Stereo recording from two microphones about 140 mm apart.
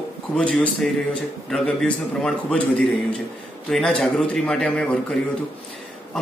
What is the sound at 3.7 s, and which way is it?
Speech, 5° left (ahead or behind).